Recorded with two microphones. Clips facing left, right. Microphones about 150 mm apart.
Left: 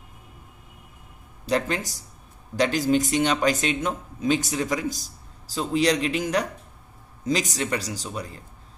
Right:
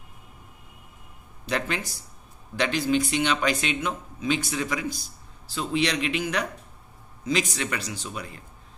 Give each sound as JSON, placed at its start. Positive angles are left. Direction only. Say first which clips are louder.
{"t": 1.4, "sound": "speech", "louder": "left 4 dB", "side_deg": 35}